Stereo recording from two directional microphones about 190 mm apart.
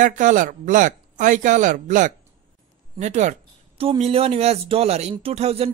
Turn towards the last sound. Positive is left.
turn(degrees=-30)  # may be behind; listen again after turning